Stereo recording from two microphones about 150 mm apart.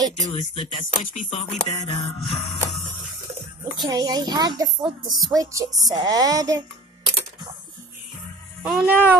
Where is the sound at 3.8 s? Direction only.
25° right (ahead or behind).